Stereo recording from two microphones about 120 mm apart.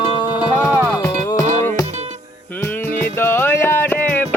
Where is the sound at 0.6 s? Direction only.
20° left (ahead or behind).